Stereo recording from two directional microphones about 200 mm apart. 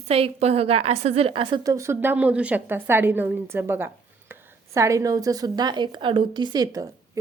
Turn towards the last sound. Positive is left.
turn(degrees=-20)  # may be behind; listen again after turning